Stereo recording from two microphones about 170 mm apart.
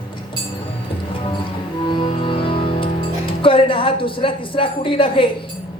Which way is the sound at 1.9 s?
30° left (ahead or behind).